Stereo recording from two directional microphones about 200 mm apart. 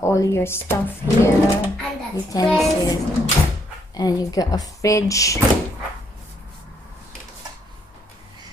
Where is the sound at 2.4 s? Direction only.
Centre (ahead or behind).